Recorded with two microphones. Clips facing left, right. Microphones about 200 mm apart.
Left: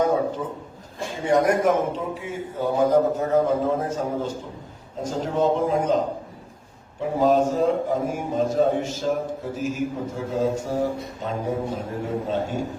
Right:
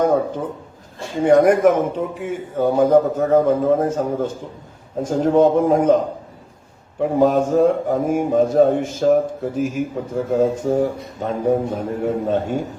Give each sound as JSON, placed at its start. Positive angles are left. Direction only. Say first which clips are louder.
{"t": 1.2, "sound": "a man's voice", "louder": "right 7 dB", "side_deg": -55}
{"t": 7.2, "sound": "a man's voice", "louder": "right 4 dB", "side_deg": -55}